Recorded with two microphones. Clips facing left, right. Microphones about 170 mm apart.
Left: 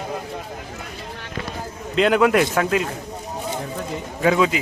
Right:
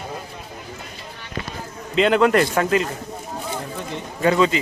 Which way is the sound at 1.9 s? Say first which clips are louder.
Even; centre (ahead or behind).